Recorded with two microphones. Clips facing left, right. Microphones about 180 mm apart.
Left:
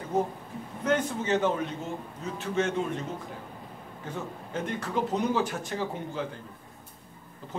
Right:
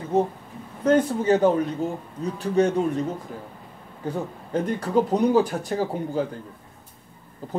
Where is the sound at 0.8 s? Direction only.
35° right (ahead or behind).